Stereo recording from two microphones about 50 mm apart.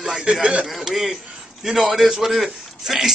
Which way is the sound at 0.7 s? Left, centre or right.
Centre.